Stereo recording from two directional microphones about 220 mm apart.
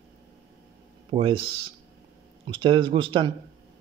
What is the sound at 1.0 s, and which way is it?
Speech, 25° right (ahead or behind).